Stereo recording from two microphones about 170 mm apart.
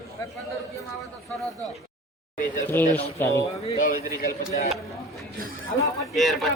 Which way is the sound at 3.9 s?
55° left (ahead or behind).